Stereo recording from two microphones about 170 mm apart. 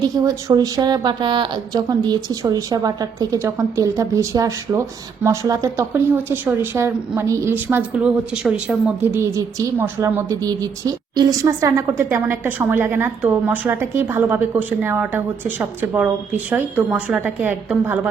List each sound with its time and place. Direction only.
0.0 s a woman's voice: 20° right (ahead or behind)